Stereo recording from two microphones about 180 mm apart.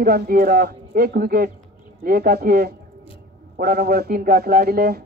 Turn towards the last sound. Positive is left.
turn(degrees=-60)  # may be behind; listen again after turning